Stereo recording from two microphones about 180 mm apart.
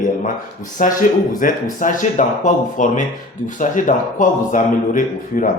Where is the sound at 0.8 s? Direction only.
50° left (ahead or behind).